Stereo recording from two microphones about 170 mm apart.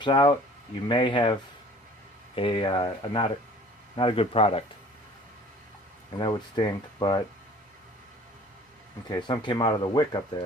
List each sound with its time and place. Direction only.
0.0 s speech: 25° left (ahead or behind)
6.1 s speech: 25° left (ahead or behind)
9.0 s speech: 25° left (ahead or behind)